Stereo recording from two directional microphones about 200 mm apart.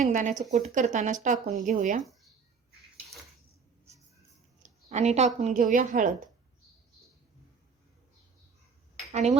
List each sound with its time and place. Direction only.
0.0 s speech: 40° right (ahead or behind)
4.6 s speech: 35° right (ahead or behind)
9.1 s speech: 35° right (ahead or behind)